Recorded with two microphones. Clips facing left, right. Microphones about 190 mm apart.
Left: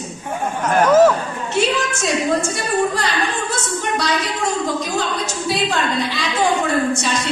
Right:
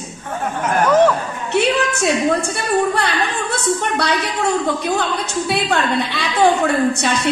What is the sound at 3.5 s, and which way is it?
A woman's voice, 60° right (ahead or behind).